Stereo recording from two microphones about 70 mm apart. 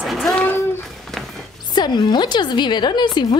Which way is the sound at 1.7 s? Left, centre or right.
Left.